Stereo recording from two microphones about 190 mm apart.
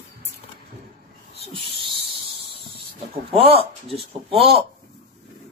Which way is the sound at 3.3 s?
30° right (ahead or behind).